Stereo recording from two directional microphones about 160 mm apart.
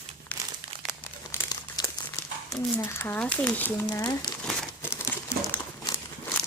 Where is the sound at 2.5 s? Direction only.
20° left (ahead or behind).